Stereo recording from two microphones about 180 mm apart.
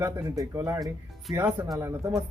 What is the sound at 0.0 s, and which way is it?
A man's voice, 15° right (ahead or behind).